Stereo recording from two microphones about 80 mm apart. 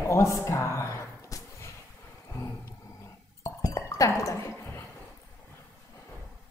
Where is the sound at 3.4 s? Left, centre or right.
Left.